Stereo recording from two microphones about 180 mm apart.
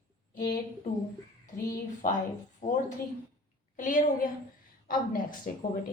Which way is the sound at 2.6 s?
45° left (ahead or behind).